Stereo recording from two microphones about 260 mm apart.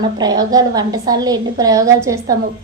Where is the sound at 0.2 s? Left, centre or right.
Centre.